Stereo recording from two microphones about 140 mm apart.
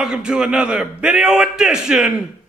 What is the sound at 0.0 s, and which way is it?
A man's voice, 5° right (ahead or behind).